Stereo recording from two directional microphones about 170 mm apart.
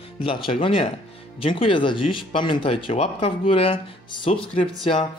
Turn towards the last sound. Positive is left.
turn(degrees=30)  # may be behind; listen again after turning